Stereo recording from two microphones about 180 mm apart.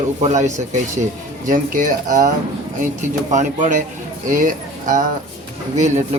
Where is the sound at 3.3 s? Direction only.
45° right (ahead or behind).